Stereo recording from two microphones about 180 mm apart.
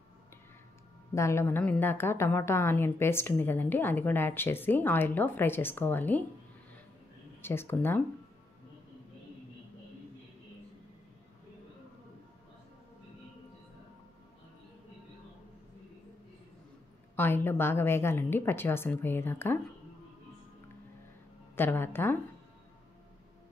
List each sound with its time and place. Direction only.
1.1 s a woman's voice: 15° left (ahead or behind)
7.4 s a woman's voice: 15° left (ahead or behind)
17.1 s a woman's voice: 10° left (ahead or behind)
21.5 s a woman's voice: 10° left (ahead or behind)